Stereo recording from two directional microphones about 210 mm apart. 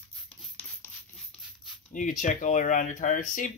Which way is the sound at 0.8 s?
5° left (ahead or behind).